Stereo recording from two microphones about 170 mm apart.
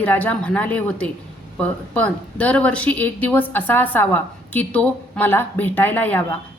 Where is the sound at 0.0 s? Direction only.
10° left (ahead or behind).